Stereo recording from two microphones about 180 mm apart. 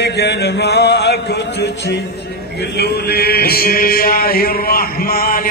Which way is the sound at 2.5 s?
65° left (ahead or behind).